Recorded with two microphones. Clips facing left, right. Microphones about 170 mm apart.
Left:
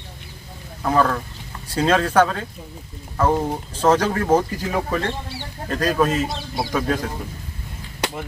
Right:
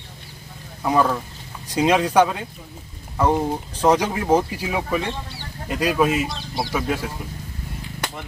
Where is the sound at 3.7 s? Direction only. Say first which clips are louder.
Left 1 dB; 10° right (ahead or behind).